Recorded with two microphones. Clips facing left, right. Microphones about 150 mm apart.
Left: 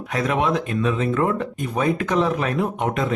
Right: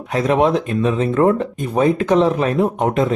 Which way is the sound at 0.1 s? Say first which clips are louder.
Right 6 dB; 30° right (ahead or behind).